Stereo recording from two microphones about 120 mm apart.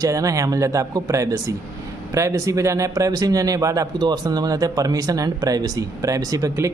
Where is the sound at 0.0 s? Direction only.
25° right (ahead or behind).